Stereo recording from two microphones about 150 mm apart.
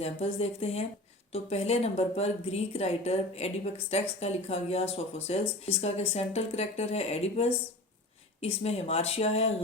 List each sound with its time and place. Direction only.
0.0 s speech: 40° left (ahead or behind)